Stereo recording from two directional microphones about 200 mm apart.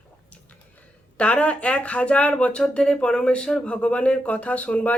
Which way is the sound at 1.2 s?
5° left (ahead or behind).